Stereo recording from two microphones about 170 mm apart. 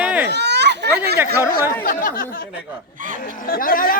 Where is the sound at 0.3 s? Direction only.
85° right.